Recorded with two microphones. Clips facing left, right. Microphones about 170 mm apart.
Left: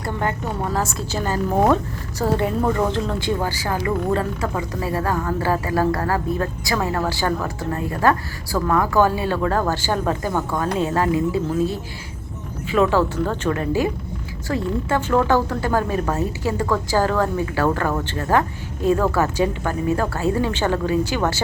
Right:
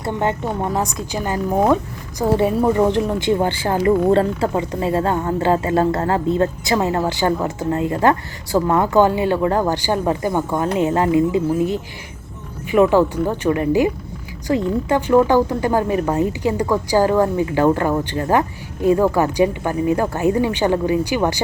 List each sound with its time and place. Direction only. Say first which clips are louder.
0.0 s speech: right 4 dB; 25° right (ahead or behind)